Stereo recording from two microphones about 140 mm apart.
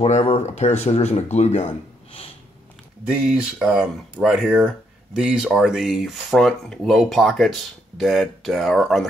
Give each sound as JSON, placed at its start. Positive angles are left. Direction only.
{"t": 0.0, "sound": "speech", "side_deg": 45}
{"t": 3.1, "sound": "speech", "side_deg": -5}